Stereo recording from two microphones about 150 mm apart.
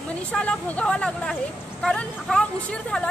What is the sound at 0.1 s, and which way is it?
Speech, 10° left (ahead or behind).